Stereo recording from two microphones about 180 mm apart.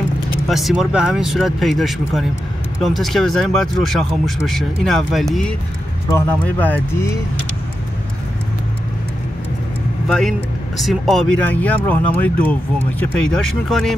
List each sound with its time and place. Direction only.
0.5 s speech: centre (ahead or behind)
6.0 s speech: 15° left (ahead or behind)
10.0 s speech: 5° left (ahead or behind)